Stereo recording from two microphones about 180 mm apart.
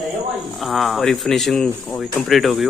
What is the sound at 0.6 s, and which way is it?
Speech, centre (ahead or behind).